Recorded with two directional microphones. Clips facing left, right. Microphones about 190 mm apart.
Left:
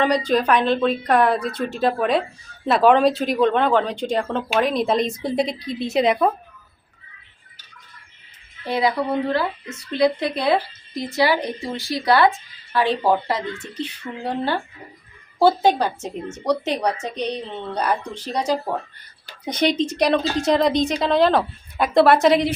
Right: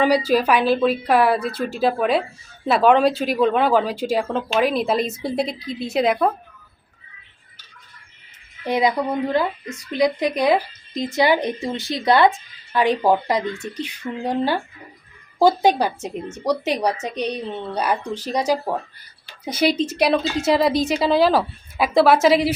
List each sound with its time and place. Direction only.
0.0 s a woman's voice: 5° right (ahead or behind)
8.6 s a woman's voice: 20° right (ahead or behind)